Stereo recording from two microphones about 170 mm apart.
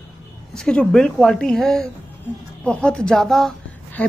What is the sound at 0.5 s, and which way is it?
A woman's voice, 5° left (ahead or behind).